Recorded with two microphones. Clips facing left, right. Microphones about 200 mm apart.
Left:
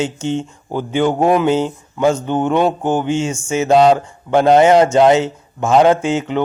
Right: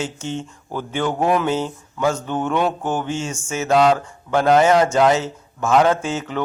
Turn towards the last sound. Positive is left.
turn(degrees=25)  # may be behind; listen again after turning